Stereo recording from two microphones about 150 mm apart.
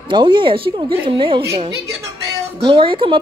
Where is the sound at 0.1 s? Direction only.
35° right (ahead or behind).